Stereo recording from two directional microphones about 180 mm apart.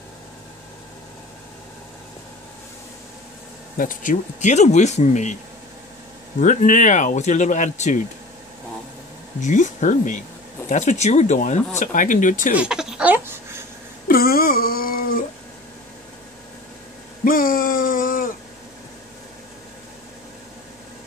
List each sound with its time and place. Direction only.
3.7 s speech: 50° left (ahead or behind)
6.4 s speech: 45° left (ahead or behind)
9.4 s speech: 40° left (ahead or behind)
12.5 s speech: 5° right (ahead or behind)
14.0 s a sound: 55° left (ahead or behind)
17.2 s a sound: 50° left (ahead or behind)